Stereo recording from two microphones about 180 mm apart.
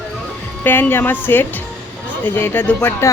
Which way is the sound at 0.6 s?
10° left (ahead or behind).